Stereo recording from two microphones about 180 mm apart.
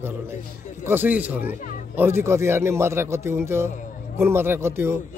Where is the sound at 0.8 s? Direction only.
10° right (ahead or behind).